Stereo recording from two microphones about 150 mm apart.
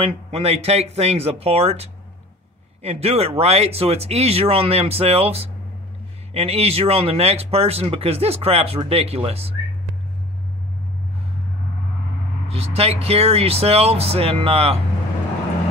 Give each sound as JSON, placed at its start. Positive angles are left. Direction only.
{"t": 0.0, "sound": "speech", "side_deg": -40}
{"t": 12.4, "sound": "speech", "side_deg": -45}